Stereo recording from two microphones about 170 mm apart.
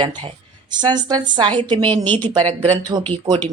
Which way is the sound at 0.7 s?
25° right (ahead or behind).